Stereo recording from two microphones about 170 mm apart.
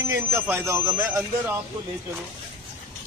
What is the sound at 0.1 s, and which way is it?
Speech, 15° right (ahead or behind).